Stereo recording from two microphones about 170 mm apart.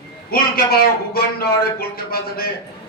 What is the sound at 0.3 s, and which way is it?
A man's voice, 65° left (ahead or behind).